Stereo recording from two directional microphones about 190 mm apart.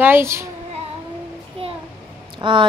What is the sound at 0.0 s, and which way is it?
Speech, 10° right (ahead or behind).